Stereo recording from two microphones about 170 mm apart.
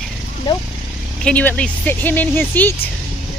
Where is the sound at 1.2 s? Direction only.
10° left (ahead or behind).